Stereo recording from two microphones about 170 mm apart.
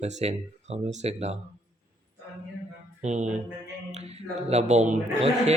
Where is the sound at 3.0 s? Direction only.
45° right (ahead or behind).